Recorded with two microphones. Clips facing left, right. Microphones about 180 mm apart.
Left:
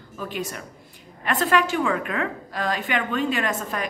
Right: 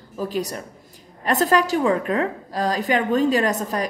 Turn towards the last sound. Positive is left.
turn(degrees=-40)  # may be behind; listen again after turning